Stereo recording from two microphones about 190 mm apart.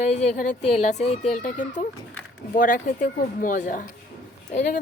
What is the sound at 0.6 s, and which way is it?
Speech, 35° left (ahead or behind).